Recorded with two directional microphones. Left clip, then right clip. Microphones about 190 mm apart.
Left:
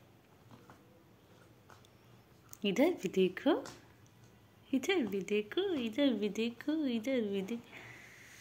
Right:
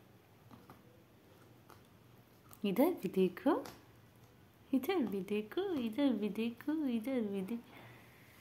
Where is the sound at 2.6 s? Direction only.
10° right (ahead or behind).